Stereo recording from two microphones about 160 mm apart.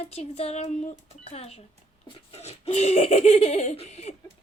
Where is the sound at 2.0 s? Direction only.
40° left (ahead or behind).